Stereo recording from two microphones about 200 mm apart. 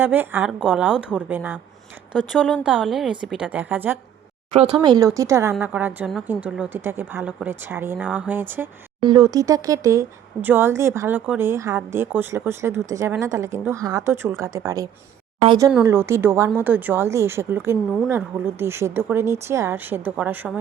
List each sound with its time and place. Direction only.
0.0 s speech: 10° right (ahead or behind)
4.5 s speech: 25° right (ahead or behind); by 8.7 s 10° right (ahead or behind)
9.0 s speech: 20° right (ahead or behind)